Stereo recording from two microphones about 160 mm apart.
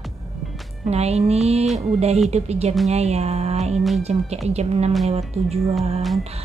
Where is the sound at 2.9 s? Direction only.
40° right (ahead or behind).